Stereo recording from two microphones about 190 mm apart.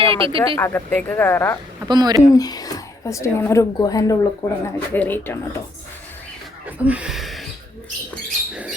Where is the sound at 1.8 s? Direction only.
20° right (ahead or behind).